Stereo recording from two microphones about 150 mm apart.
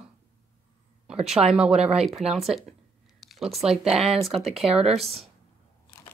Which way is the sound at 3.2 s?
Centre (ahead or behind).